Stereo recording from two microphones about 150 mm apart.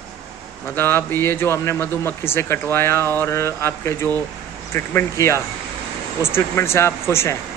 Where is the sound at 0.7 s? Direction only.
15° left (ahead or behind).